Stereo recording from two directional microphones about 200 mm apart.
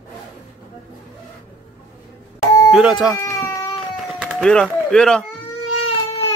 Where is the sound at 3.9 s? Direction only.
Centre (ahead or behind).